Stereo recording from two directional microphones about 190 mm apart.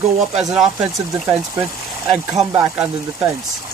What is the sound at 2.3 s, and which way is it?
Speech, 20° right (ahead or behind).